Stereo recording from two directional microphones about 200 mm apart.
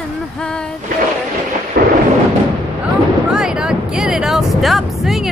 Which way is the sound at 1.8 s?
50° right (ahead or behind).